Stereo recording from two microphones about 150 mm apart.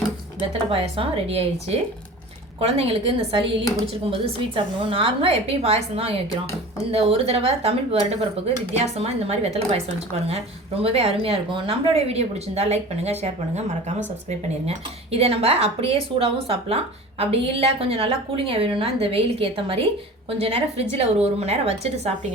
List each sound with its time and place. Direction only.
0.7 s a woman's voice: 40° right (ahead or behind)